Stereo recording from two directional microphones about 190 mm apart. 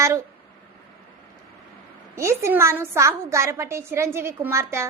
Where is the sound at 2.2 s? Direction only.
15° right (ahead or behind).